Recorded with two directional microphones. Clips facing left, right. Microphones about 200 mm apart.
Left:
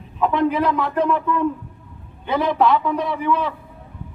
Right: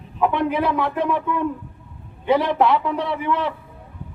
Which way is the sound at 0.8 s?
15° right (ahead or behind).